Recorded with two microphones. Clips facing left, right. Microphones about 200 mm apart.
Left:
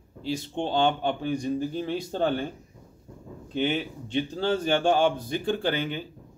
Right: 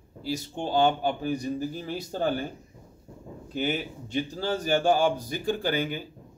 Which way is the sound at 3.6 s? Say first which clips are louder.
Left 2 dB; 40° right (ahead or behind).